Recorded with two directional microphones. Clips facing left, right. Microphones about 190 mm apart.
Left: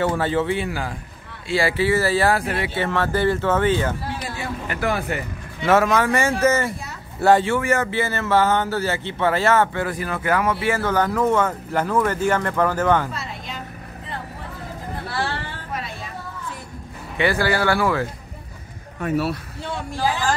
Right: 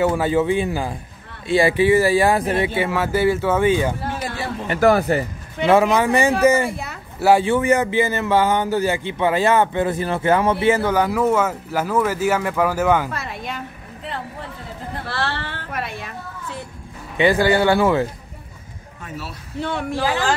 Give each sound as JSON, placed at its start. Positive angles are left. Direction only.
{"t": 0.0, "sound": "speech", "side_deg": -10}
{"t": 2.8, "sound": "speech", "side_deg": -10}
{"t": 4.4, "sound": "speech", "side_deg": -40}
{"t": 5.7, "sound": "speech", "side_deg": -15}
{"t": 13.1, "sound": "a sound", "side_deg": -60}
{"t": 15.0, "sound": "a sound", "side_deg": -75}
{"t": 17.2, "sound": "speech", "side_deg": -20}
{"t": 18.9, "sound": "speech", "side_deg": 65}
{"t": 19.6, "sound": "speech", "side_deg": -65}